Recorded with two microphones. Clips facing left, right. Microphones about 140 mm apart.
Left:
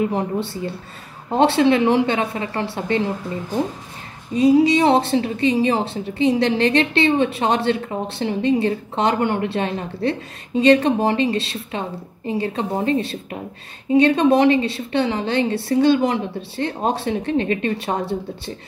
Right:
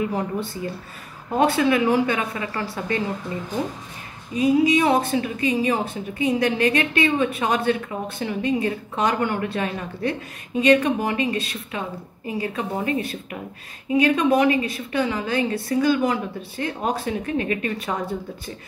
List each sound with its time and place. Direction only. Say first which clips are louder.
0.1 s a woman's voice: left 3 dB; 30° left (ahead or behind)
4.4 s a woman's voice: left 4 dB; 30° left (ahead or behind)